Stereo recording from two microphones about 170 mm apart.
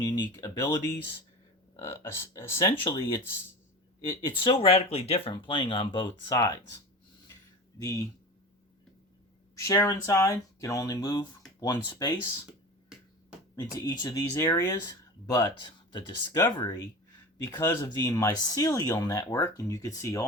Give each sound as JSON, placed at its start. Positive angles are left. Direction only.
{"t": 0.0, "sound": "speech", "side_deg": 25}
{"t": 4.4, "sound": "speech", "side_deg": 30}
{"t": 7.8, "sound": "speech", "side_deg": 20}
{"t": 9.6, "sound": "speech", "side_deg": 20}
{"t": 13.7, "sound": "speech", "side_deg": 20}